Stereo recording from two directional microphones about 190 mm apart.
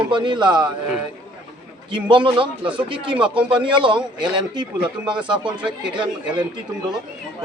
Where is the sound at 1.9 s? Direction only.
25° right (ahead or behind).